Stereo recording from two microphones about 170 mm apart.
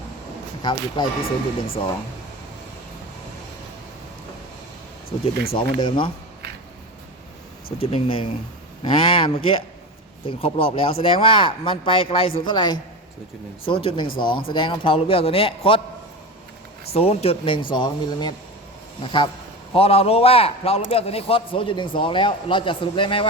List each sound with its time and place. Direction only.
0.6 s speech: 25° left (ahead or behind)
1.2 s speech: 60° left (ahead or behind)
5.5 s speech: 30° left (ahead or behind)
7.8 s a man's voice: 35° left (ahead or behind)
16.9 s a man's voice: 35° left (ahead or behind)